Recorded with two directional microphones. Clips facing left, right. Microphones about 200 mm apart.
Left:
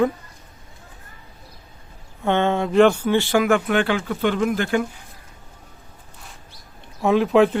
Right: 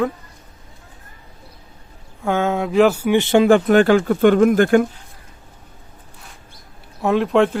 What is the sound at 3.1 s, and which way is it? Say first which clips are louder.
Speech: right 5 dB; 25° right (ahead or behind).